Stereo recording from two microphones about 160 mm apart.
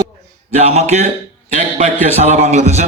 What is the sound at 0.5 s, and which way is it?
A man's voice, 40° right (ahead or behind).